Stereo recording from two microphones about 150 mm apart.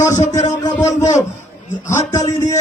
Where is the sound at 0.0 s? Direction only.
25° left (ahead or behind).